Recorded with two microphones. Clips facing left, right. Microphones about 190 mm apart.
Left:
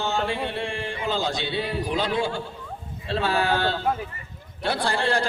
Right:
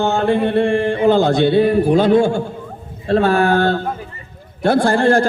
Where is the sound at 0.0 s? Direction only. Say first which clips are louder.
Right 10 dB; 55° right (ahead or behind).